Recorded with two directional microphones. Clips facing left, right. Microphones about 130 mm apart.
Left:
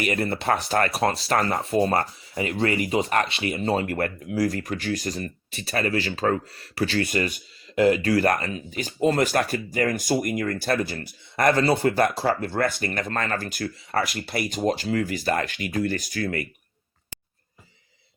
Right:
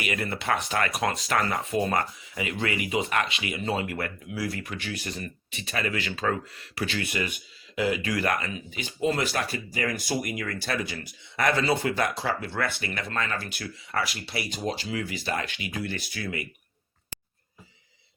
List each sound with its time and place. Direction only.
0.0 s speech: 40° left (ahead or behind)